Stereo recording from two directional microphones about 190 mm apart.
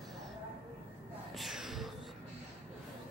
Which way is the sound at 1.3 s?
Centre (ahead or behind).